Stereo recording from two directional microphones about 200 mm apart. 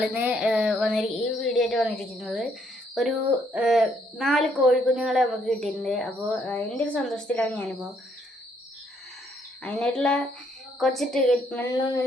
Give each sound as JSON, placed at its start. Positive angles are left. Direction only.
{"t": 0.0, "sound": "speech", "side_deg": -10}
{"t": 9.6, "sound": "speech", "side_deg": 5}
{"t": 11.8, "sound": "speech", "side_deg": 20}